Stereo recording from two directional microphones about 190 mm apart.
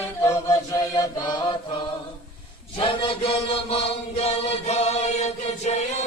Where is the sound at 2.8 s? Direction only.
30° left (ahead or behind).